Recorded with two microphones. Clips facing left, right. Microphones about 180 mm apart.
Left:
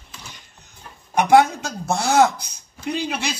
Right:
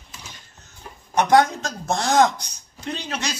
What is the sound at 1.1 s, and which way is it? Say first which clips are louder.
Speech: left 2 dB; 10° left (ahead or behind).